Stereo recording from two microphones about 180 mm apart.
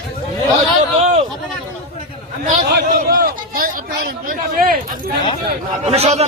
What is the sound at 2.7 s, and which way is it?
A man's voice, 55° right (ahead or behind).